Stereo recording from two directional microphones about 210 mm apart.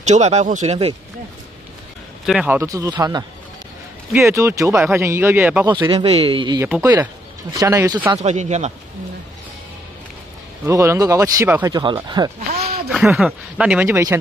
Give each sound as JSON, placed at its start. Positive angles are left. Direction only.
{"t": 0.0, "sound": "speech", "side_deg": -30}
{"t": 2.2, "sound": "speech", "side_deg": -5}
{"t": 4.3, "sound": "speech", "side_deg": -15}
{"t": 5.7, "sound": "a man's voice", "side_deg": -20}
{"t": 8.2, "sound": "speech", "side_deg": -35}
{"t": 10.6, "sound": "speech", "side_deg": -15}
{"t": 12.9, "sound": "speech", "side_deg": -5}